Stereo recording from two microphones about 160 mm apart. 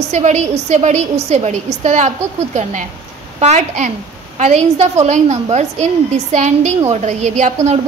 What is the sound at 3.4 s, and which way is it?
A woman's voice, 45° right (ahead or behind).